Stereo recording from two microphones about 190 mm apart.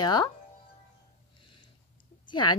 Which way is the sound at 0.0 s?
20° left (ahead or behind).